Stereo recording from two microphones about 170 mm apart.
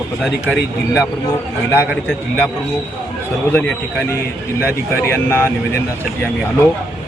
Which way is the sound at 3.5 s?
10° left (ahead or behind).